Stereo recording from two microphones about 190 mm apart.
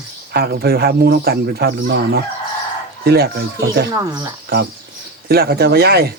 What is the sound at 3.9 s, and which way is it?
Speech, 15° right (ahead or behind).